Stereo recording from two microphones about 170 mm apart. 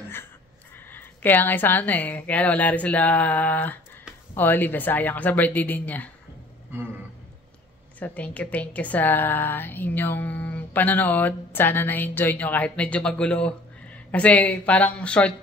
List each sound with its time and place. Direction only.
0.7 s a woman's voice: 10° left (ahead or behind)
8.0 s a woman's voice: 10° left (ahead or behind)